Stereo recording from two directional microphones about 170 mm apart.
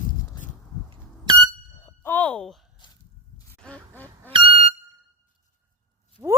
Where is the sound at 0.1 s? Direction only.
50° left (ahead or behind).